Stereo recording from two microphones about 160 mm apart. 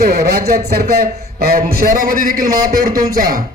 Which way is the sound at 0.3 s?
70° right (ahead or behind).